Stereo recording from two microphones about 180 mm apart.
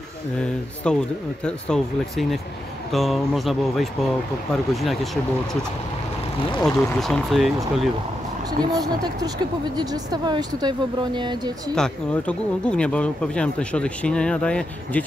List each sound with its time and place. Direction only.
0.8 s speech: 5° left (ahead or behind)
6.6 s speech: centre (ahead or behind)
8.5 s speech: 20° right (ahead or behind)
11.7 s speech: 5° left (ahead or behind)